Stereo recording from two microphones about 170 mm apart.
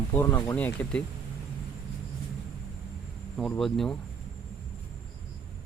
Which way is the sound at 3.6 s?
Centre (ahead or behind).